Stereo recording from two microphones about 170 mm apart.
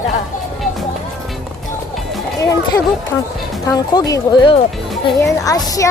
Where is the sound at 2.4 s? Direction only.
20° left (ahead or behind).